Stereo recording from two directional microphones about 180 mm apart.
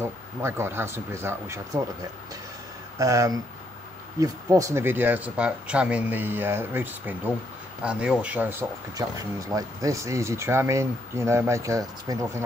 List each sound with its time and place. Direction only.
0.0 s speech: 15° right (ahead or behind)
3.0 s speech: 20° right (ahead or behind)